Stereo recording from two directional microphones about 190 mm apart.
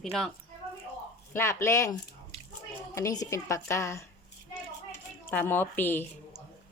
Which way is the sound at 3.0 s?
15° left (ahead or behind).